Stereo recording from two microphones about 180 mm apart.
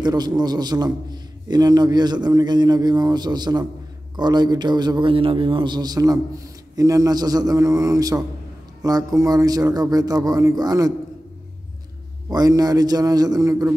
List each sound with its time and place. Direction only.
0.0 s a man's voice: 20° right (ahead or behind)
12.3 s a man's voice: 20° right (ahead or behind)